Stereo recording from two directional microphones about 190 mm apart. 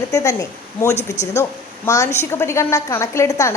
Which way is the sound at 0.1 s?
15° left (ahead or behind).